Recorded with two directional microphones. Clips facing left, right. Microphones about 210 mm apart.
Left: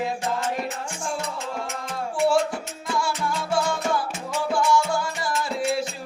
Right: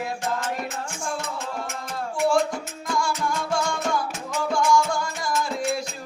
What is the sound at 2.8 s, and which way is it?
Music, 5° left (ahead or behind).